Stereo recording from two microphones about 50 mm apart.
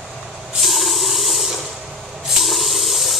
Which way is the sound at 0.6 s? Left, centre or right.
Centre.